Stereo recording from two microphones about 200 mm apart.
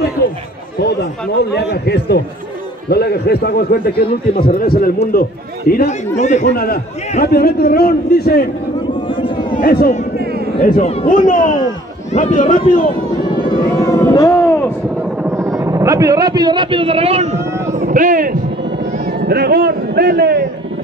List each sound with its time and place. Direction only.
1.4 s a man's voice: 55° left (ahead or behind)
6.1 s a man's voice: 35° left (ahead or behind)
6.4 s a man's voice: 50° left (ahead or behind)
9.1 s a sound: 25° left (ahead or behind)
9.6 s speech: 50° left (ahead or behind)
10.1 s a sound: 50° right (ahead or behind)
10.6 s a man's voice: 45° left (ahead or behind)
13.8 s a sound: 15° left (ahead or behind)
15.0 s speech: 5° right (ahead or behind); by 17.4 s 30° right (ahead or behind)
17.5 s boat: 15° right (ahead or behind)
17.7 s a man's voice: 40° right (ahead or behind)